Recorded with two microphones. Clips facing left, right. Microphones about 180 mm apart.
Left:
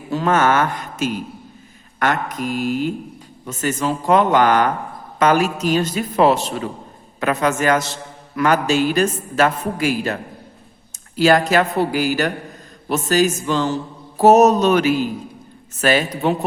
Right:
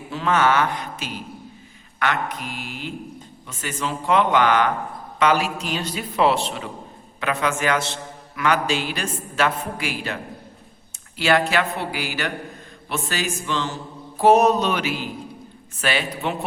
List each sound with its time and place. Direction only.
0.1 s a man's voice: 45° left (ahead or behind)
11.2 s a man's voice: 40° left (ahead or behind)